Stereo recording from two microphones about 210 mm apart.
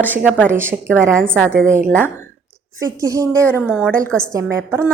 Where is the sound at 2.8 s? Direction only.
15° right (ahead or behind).